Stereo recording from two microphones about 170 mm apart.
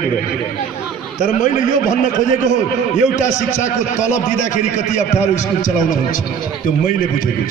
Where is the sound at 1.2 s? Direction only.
50° left (ahead or behind).